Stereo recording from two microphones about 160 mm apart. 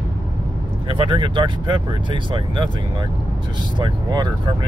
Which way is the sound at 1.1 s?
30° right (ahead or behind).